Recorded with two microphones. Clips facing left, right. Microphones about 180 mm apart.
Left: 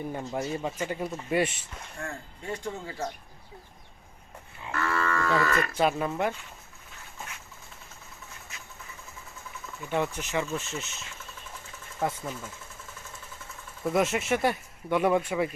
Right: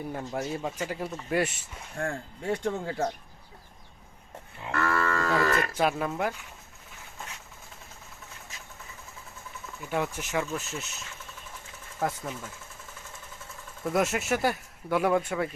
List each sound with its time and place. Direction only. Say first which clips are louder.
0.1 s speech: right 1 dB; 5° left (ahead or behind)
2.6 s speech: right 5 dB; 60° right (ahead or behind)
4.7 s livestock: right 1 dB; 45° right (ahead or behind)
5.7 s speech: left 1 dB; centre (ahead or behind)
9.9 s speech: left 1 dB; 5° right (ahead or behind)
11.9 s speech: even; centre (ahead or behind)
13.8 s speech: left 1 dB; centre (ahead or behind)